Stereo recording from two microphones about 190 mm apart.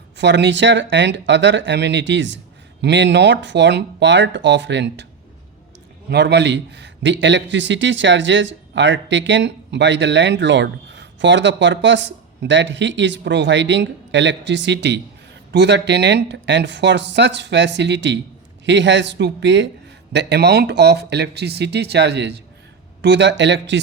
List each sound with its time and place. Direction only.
0.2 s a man's voice: 65° right (ahead or behind)
6.1 s a man's voice: 65° right (ahead or behind)